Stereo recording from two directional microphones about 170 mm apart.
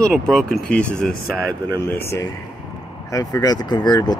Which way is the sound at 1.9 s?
15° left (ahead or behind).